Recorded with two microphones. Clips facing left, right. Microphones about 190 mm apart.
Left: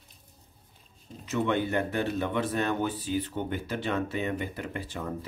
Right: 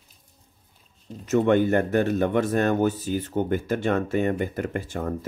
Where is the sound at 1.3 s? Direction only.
45° right (ahead or behind).